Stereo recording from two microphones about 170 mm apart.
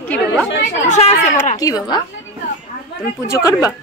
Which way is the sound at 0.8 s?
40° left (ahead or behind).